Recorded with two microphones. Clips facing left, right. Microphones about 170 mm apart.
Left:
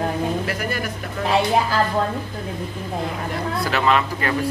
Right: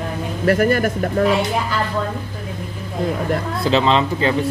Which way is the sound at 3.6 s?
25° right (ahead or behind).